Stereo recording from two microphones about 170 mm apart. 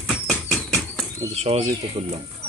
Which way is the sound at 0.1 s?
Centre (ahead or behind).